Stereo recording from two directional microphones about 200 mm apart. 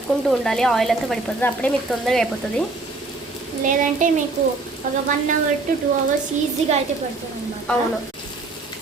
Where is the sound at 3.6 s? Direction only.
40° right (ahead or behind).